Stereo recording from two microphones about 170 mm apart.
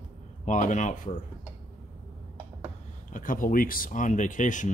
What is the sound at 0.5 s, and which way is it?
Speech, 45° left (ahead or behind).